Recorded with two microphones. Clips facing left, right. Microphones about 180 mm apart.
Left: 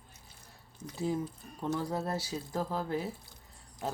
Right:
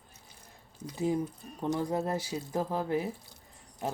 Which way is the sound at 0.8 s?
15° right (ahead or behind).